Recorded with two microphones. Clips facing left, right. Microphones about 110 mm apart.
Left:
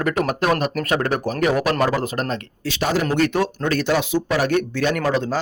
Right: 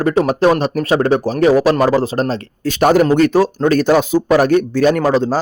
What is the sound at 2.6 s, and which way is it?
Speech, 50° right (ahead or behind).